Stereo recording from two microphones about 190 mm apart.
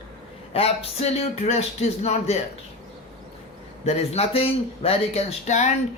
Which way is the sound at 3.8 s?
35° left (ahead or behind).